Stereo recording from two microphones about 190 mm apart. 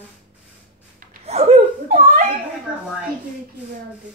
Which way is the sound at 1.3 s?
35° right (ahead or behind).